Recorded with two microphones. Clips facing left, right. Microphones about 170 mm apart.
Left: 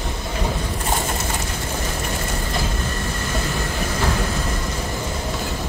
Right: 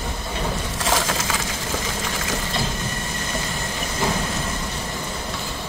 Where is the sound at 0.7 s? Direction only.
90° right.